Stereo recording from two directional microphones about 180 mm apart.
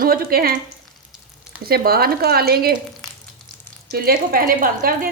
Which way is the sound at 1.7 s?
55° right (ahead or behind).